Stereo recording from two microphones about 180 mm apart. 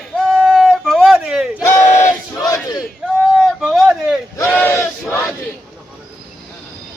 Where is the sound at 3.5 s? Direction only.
Centre (ahead or behind).